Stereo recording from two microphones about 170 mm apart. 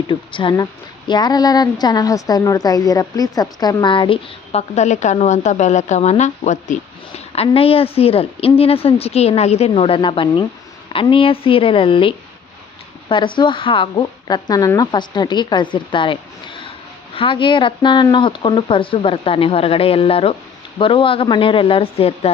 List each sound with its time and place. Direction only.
0.1 s speech: 30° left (ahead or behind); by 6.7 s 45° left (ahead or behind)
7.3 s speech: 35° left (ahead or behind)